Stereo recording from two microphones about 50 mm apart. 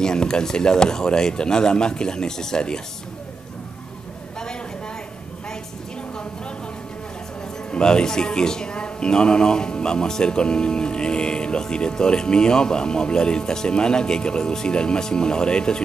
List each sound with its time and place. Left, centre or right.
0.0 s speech: centre
7.7 s speech: centre